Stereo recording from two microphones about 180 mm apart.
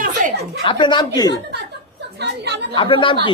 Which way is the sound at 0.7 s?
25° left (ahead or behind).